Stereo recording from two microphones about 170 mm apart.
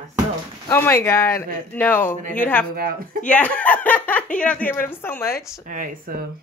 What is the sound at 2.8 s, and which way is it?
Speech, 60° right (ahead or behind).